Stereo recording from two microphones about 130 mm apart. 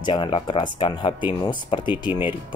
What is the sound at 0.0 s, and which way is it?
Speech, 40° left (ahead or behind).